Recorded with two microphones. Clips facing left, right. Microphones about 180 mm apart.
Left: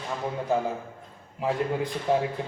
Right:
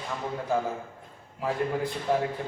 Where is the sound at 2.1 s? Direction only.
15° left (ahead or behind).